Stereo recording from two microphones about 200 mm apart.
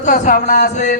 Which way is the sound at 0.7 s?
35° left (ahead or behind).